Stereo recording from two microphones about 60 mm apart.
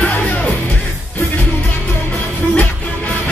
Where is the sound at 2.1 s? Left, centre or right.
Left.